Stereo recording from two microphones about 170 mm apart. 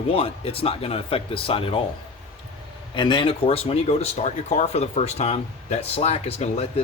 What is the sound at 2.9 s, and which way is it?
Speech, 25° left (ahead or behind).